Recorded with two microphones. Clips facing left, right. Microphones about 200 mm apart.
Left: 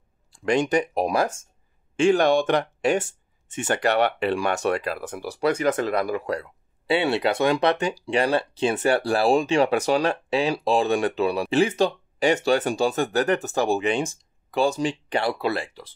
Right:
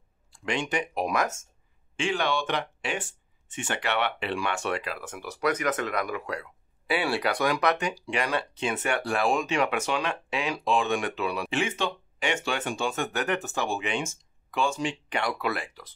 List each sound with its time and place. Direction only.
0.5 s speech: 40° left (ahead or behind)
2.0 s speech: 45° left (ahead or behind)
7.0 s speech: 25° left (ahead or behind)